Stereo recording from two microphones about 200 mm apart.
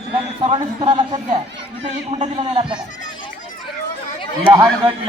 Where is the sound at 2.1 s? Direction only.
30° right (ahead or behind).